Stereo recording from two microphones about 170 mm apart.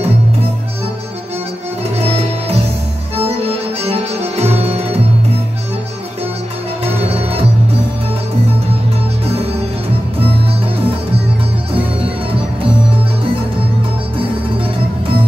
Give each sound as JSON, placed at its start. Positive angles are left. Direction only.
{"t": 2.0, "sound": "music", "side_deg": -40}
{"t": 4.4, "sound": "music", "side_deg": -40}